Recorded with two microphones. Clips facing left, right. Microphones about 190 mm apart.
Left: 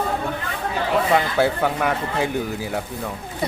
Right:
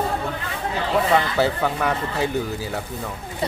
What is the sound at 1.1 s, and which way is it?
Speech, 10° left (ahead or behind).